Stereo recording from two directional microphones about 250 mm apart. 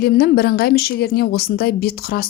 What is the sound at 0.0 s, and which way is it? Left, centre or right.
A woman's voice, left.